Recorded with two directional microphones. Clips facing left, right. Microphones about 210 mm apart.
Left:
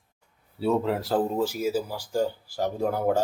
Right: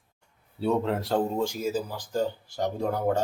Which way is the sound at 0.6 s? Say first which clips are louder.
Left 1 dB; centre (ahead or behind).